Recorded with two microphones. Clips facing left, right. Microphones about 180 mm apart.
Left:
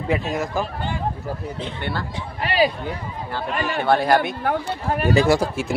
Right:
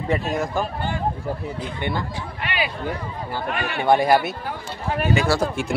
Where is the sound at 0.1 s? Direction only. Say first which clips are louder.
Even; centre (ahead or behind).